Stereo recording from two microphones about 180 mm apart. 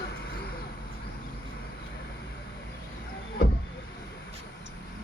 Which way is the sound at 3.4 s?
60° left (ahead or behind).